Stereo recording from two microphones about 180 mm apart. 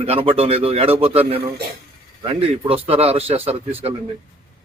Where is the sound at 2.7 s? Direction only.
35° right (ahead or behind).